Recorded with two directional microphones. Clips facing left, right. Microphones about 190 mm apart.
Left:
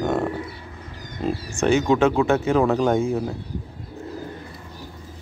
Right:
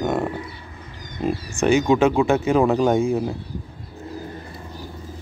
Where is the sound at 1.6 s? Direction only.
10° right (ahead or behind).